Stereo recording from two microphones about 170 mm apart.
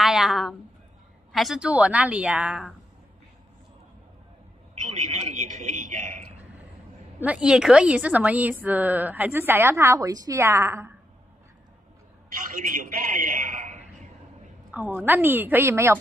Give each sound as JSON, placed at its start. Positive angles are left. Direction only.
{"t": 0.0, "sound": "a sound", "side_deg": -5}
{"t": 1.3, "sound": "a woman's voice", "side_deg": 0}
{"t": 4.8, "sound": "a man's voice", "side_deg": -45}
{"t": 7.2, "sound": "a woman's voice", "side_deg": -5}
{"t": 12.3, "sound": "a man's voice", "side_deg": -55}
{"t": 14.7, "sound": "a woman's voice", "side_deg": -10}